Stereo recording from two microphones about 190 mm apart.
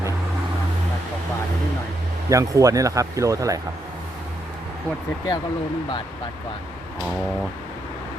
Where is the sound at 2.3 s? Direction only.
15° right (ahead or behind).